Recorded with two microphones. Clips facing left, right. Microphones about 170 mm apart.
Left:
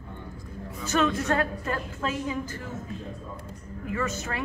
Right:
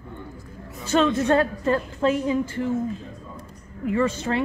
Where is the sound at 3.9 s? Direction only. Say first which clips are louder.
Right 8 dB; 30° right (ahead or behind).